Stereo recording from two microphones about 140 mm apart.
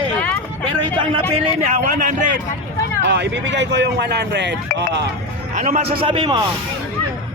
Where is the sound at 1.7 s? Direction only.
65° right (ahead or behind).